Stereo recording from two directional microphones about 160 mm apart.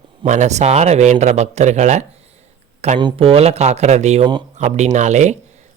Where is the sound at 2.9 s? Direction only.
30° right (ahead or behind).